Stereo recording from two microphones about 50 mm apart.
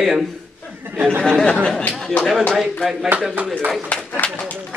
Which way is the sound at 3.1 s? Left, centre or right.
Right.